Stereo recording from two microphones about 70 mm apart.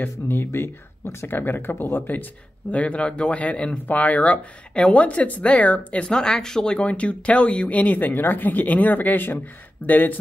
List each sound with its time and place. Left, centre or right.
0.0 s speech: left